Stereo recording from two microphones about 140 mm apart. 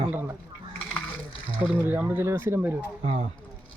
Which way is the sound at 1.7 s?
15° right (ahead or behind).